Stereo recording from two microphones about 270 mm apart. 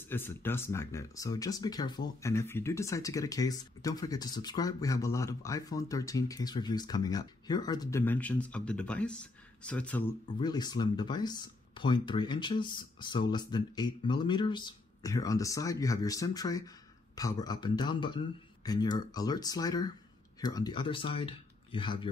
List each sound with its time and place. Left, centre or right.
0.1 s speech: centre
10.4 s speech: centre